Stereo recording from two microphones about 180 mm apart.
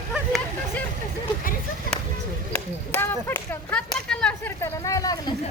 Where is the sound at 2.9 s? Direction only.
10° left (ahead or behind).